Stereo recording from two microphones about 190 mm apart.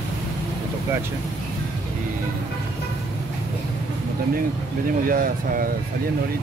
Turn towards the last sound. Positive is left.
turn(degrees=-50)  # may be behind; listen again after turning